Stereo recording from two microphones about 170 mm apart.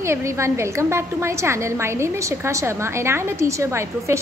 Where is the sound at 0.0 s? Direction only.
15° right (ahead or behind).